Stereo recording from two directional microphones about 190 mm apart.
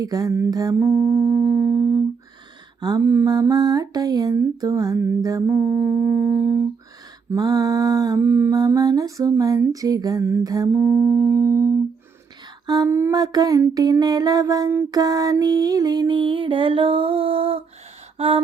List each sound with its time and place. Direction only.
0.0 s mantra: 20° right (ahead or behind)
12.6 s a sound: 20° right (ahead or behind)
18.2 s mantra: 30° right (ahead or behind)